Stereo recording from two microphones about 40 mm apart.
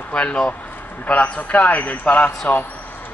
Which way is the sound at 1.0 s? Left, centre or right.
Left.